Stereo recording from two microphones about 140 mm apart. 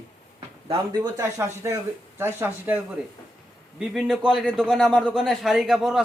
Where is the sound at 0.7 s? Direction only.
25° right (ahead or behind).